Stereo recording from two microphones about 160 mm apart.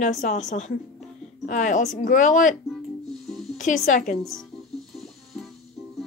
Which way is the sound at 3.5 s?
50° left (ahead or behind).